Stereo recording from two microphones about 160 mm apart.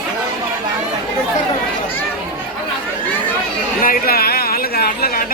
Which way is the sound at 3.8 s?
70° left (ahead or behind).